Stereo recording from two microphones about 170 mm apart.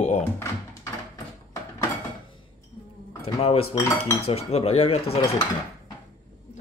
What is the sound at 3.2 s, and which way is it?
Speech, 35° left (ahead or behind).